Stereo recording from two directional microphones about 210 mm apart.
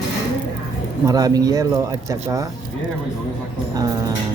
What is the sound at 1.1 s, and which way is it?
Speech, 15° right (ahead or behind).